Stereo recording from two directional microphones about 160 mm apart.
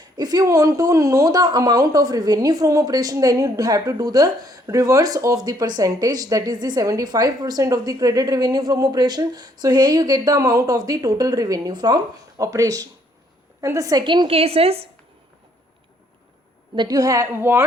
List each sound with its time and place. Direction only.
0.0 s a woman's voice: 25° right (ahead or behind)
16.7 s speech: 25° right (ahead or behind)